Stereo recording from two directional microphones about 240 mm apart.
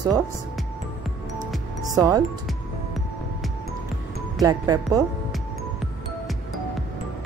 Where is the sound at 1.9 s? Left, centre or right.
Centre.